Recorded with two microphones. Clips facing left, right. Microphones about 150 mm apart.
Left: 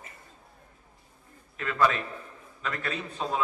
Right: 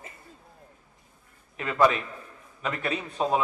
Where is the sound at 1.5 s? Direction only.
20° right (ahead or behind).